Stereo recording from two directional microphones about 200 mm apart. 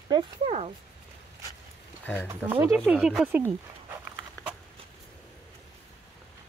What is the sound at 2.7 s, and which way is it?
Speech, centre (ahead or behind).